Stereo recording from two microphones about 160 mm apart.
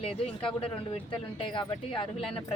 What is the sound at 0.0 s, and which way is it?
Speech, 35° left (ahead or behind).